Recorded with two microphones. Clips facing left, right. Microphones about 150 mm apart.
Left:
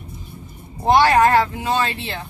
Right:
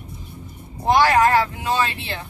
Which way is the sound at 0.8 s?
25° left (ahead or behind).